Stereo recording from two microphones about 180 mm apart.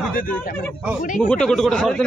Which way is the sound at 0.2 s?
50° left (ahead or behind).